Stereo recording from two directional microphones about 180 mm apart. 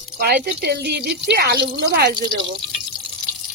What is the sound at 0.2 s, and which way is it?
Speech, 60° right (ahead or behind).